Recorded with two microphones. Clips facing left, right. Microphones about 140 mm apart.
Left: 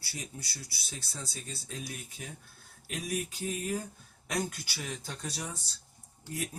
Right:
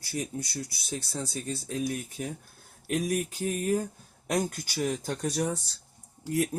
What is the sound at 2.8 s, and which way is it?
Speech, 50° right (ahead or behind).